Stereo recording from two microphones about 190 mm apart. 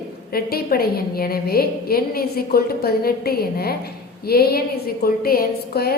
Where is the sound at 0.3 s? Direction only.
55° left (ahead or behind).